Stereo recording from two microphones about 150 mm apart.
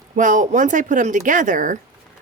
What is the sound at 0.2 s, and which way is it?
A woman's voice, 60° right (ahead or behind).